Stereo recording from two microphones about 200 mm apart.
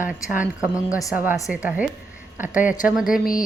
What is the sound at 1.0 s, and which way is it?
A woman's voice, 5° right (ahead or behind).